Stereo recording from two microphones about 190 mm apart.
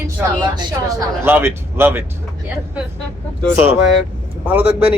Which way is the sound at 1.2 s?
10° right (ahead or behind).